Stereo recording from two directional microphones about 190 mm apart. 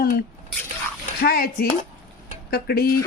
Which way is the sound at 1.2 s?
50° left (ahead or behind).